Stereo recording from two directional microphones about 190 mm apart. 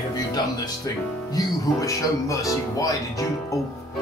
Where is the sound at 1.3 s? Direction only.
15° left (ahead or behind).